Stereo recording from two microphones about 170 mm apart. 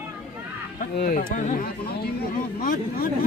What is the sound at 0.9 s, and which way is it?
Speech, 55° left (ahead or behind).